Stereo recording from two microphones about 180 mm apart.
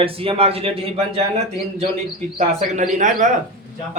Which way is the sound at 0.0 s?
30° right (ahead or behind).